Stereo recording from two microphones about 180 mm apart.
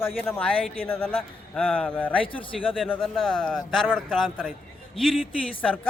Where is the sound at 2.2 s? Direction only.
30° left (ahead or behind).